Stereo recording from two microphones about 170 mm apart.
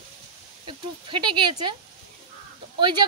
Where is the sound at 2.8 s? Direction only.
25° right (ahead or behind).